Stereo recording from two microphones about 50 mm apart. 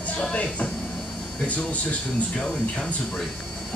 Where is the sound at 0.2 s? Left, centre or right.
Left.